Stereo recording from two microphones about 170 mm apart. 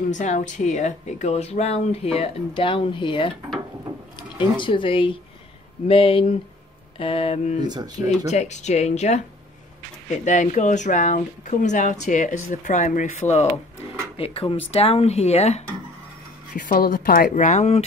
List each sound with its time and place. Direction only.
0.1 s speech: 45° left (ahead or behind)
7.6 s speech: 25° right (ahead or behind)
8.3 s speech: 40° left (ahead or behind)
10.2 s speech: 45° left (ahead or behind)
16.5 s speech: 55° left (ahead or behind); by 17.8 s 40° left (ahead or behind)